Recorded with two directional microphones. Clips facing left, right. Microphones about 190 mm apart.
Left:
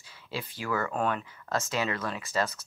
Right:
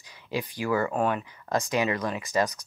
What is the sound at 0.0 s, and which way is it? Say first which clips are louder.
Speech: right 6 dB; 15° right (ahead or behind).